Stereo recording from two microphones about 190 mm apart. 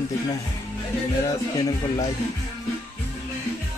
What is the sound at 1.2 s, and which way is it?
Speech, 20° left (ahead or behind).